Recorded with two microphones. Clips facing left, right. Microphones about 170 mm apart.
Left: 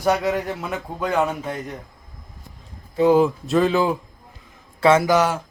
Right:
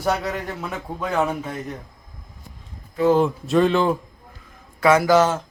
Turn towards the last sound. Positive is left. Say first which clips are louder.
# even
turn(degrees=20)  # may be behind; listen again after turning